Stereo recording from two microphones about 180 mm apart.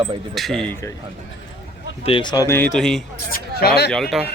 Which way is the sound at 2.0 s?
25° left (ahead or behind).